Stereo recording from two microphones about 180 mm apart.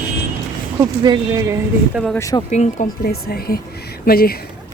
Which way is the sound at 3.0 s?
60° left (ahead or behind).